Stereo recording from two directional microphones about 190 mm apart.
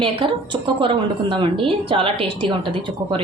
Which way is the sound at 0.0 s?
25° right (ahead or behind).